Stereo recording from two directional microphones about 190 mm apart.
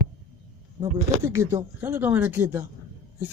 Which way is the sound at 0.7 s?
15° right (ahead or behind).